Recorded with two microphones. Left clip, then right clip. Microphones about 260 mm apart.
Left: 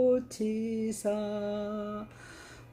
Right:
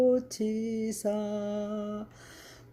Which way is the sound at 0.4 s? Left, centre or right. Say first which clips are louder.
Right 1 dB; right.